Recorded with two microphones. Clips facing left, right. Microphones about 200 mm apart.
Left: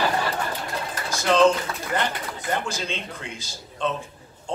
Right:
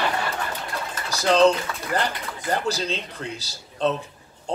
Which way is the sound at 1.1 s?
35° right (ahead or behind).